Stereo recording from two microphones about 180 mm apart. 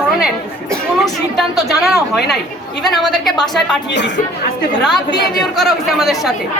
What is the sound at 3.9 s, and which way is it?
Speech, 75° left (ahead or behind).